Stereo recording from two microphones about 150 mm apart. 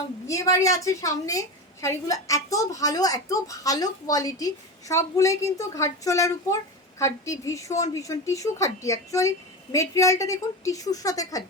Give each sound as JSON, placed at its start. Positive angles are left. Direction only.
{"t": 0.3, "sound": "a woman's voice", "side_deg": 20}